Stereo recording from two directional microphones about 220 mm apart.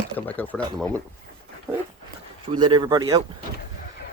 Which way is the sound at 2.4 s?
20° right (ahead or behind).